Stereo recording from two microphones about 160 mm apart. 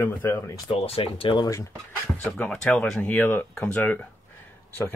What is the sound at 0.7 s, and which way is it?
Speech, 35° left (ahead or behind).